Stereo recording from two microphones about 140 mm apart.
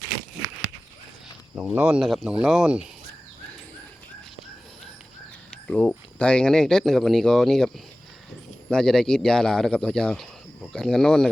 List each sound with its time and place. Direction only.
1.5 s speech: 5° right (ahead or behind)
5.6 s speech: 10° left (ahead or behind)
8.7 s speech: 5° left (ahead or behind)